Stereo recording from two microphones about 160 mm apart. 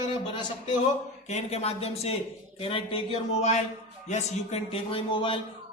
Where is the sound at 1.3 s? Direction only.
40° left (ahead or behind).